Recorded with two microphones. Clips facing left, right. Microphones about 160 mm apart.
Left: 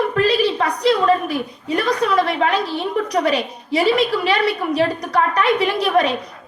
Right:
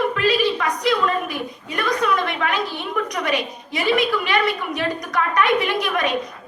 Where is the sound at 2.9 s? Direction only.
30° left (ahead or behind).